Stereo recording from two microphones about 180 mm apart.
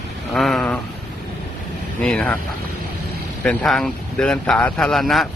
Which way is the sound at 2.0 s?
5° left (ahead or behind).